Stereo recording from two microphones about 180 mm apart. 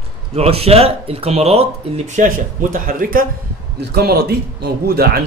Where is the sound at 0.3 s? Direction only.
35° right (ahead or behind).